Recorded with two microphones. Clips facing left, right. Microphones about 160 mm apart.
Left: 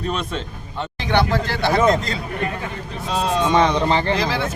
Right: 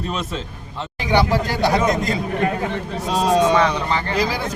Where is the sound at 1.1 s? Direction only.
10° right (ahead or behind).